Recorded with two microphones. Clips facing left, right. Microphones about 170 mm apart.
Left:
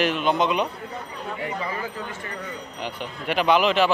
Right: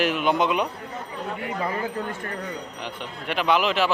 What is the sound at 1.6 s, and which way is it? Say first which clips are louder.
Speech: right 3 dB; 55° right (ahead or behind).